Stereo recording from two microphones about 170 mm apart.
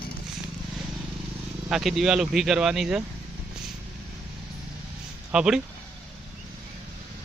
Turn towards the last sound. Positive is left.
turn(degrees=-5)  # may be behind; listen again after turning